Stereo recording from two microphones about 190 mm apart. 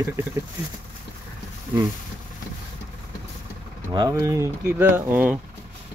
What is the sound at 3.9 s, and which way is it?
Speech, 20° right (ahead or behind).